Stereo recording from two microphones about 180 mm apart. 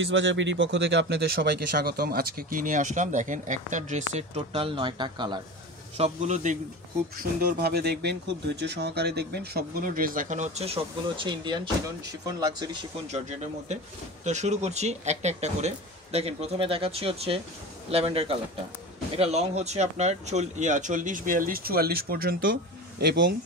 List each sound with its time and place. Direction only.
0.0 s speech: 90° right; by 5.4 s 25° right (ahead or behind)
5.9 s speech: 40° right (ahead or behind)
7.6 s speech: 65° right (ahead or behind); by 10.8 s 35° right (ahead or behind)
11.2 s speech: 25° right (ahead or behind)
14.2 s speech: 40° right (ahead or behind); by 23.3 s 60° right (ahead or behind)